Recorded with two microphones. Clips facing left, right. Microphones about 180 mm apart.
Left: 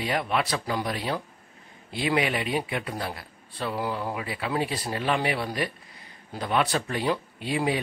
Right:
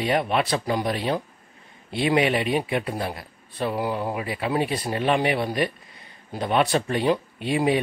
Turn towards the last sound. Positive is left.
turn(degrees=-20)  # may be behind; listen again after turning